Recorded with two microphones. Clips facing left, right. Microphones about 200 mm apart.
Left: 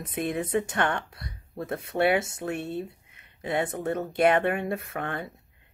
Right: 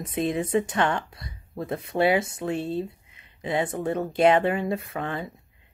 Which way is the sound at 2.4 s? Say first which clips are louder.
Right 4 dB; 25° right (ahead or behind).